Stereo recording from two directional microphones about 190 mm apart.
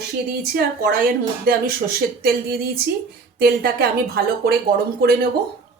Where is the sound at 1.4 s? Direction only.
50° right (ahead or behind).